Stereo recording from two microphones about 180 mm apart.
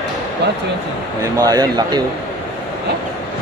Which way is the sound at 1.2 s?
20° right (ahead or behind).